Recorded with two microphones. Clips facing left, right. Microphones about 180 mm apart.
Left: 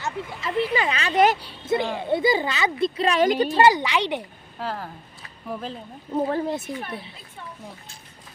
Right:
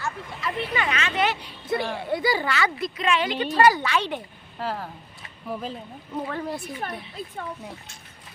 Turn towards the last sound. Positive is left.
turn(degrees=20)  # may be behind; listen again after turning